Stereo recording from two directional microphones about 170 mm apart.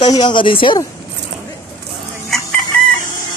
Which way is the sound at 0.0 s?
25° left (ahead or behind).